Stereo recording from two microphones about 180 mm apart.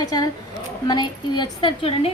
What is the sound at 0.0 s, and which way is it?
A woman's voice, 20° left (ahead or behind).